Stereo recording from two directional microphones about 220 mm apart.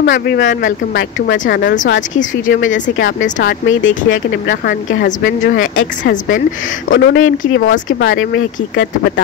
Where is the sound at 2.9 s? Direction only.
45° left (ahead or behind).